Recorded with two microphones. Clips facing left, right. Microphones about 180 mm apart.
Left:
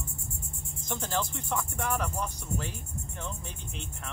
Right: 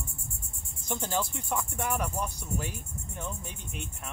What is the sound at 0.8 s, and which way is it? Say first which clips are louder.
Speech: right 1 dB; 10° right (ahead or behind).